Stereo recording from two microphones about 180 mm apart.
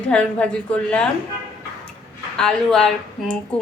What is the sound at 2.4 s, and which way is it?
Speech, 5° left (ahead or behind).